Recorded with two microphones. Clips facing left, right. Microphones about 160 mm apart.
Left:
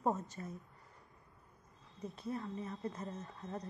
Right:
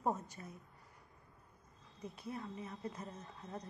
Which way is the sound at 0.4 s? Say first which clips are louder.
Left 5 dB; 5° right (ahead or behind).